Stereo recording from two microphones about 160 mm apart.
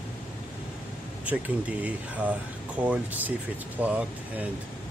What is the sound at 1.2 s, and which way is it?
Speech, 10° right (ahead or behind).